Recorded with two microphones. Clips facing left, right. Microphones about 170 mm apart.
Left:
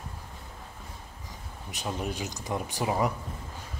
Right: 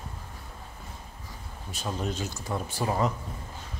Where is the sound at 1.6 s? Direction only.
15° left (ahead or behind).